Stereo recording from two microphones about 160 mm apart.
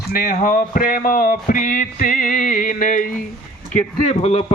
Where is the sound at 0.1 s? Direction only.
60° left (ahead or behind).